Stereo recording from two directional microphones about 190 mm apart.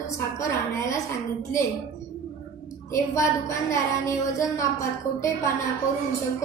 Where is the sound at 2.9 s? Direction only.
15° left (ahead or behind).